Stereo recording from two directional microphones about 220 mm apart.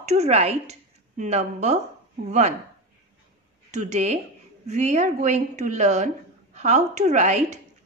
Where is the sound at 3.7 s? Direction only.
30° right (ahead or behind).